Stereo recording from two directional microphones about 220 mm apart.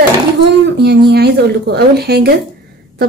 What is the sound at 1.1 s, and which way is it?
A woman's voice, 50° right (ahead or behind).